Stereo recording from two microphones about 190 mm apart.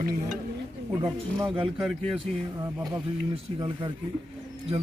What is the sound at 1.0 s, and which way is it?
Speech, 25° right (ahead or behind).